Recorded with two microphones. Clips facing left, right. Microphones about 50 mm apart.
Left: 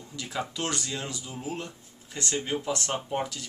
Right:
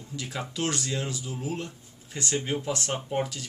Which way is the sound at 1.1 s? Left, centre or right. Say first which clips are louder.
Right 2 dB; centre.